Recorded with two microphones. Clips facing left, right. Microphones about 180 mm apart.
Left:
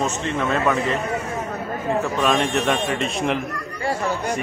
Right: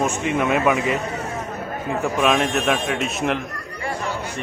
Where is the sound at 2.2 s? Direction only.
5° right (ahead or behind).